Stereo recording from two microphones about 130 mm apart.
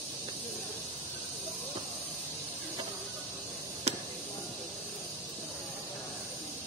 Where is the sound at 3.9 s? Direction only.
55° right (ahead or behind).